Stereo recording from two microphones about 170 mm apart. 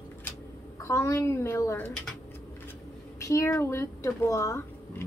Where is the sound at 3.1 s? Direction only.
20° left (ahead or behind).